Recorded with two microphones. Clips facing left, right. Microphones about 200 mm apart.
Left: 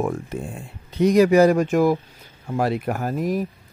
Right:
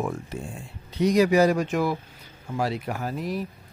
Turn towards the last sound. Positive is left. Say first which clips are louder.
# left 6 dB
turn(degrees=45)  # may be behind; listen again after turning